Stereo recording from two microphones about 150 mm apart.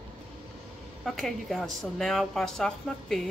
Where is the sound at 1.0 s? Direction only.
Centre (ahead or behind).